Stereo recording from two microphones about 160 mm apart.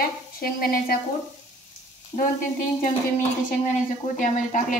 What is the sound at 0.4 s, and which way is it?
Speech, 65° left (ahead or behind).